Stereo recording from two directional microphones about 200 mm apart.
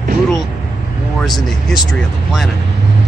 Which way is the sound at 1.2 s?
Centre (ahead or behind).